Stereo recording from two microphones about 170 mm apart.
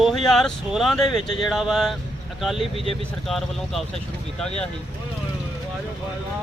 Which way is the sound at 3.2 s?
Centre (ahead or behind).